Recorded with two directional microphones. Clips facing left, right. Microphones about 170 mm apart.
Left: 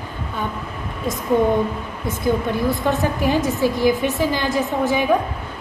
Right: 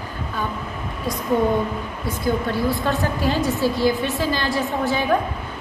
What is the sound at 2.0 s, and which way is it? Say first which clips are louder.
A woman's voice: left 2 dB; 20° left (ahead or behind).